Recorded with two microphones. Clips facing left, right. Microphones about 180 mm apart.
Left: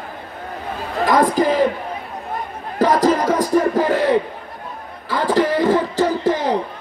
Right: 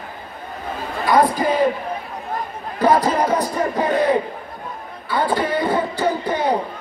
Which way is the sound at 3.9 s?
80° left.